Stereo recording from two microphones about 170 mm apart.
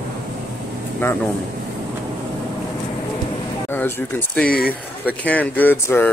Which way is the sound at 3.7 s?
10° left (ahead or behind).